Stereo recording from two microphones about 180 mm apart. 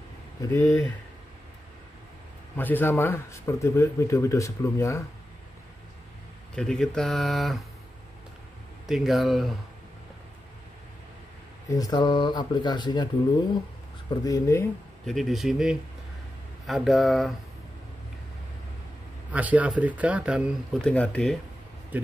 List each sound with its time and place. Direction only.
0.4 s speech: 15° left (ahead or behind)
2.5 s speech: 10° left (ahead or behind)
6.5 s speech: 5° left (ahead or behind)
8.8 s speech: centre (ahead or behind)
11.7 s speech: 20° left (ahead or behind)
14.2 s speech: 15° left (ahead or behind)
15.0 s speech: centre (ahead or behind)
19.3 s speech: 10° right (ahead or behind)
20.8 s speech: 5° left (ahead or behind)